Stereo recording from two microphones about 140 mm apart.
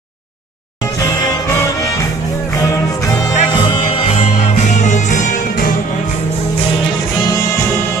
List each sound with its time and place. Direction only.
2.6 s music: 25° left (ahead or behind)
3.5 s music: 35° left (ahead or behind); by 5.7 s 60° left (ahead or behind)